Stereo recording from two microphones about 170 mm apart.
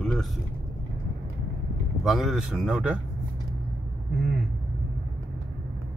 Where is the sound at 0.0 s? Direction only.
Centre (ahead or behind).